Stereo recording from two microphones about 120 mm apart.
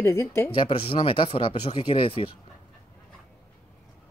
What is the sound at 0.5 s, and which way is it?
Speech, 50° left (ahead or behind).